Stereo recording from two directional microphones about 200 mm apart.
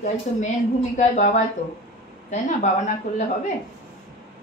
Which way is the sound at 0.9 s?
40° left (ahead or behind).